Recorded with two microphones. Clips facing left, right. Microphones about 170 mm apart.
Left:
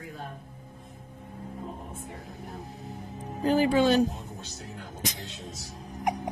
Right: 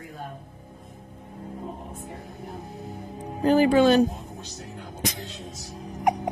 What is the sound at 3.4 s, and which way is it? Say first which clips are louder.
Speech: right 4 dB; 55° right (ahead or behind).